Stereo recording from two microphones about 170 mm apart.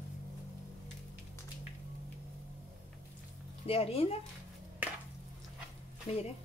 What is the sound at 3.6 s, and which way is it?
Speech, 35° left (ahead or behind).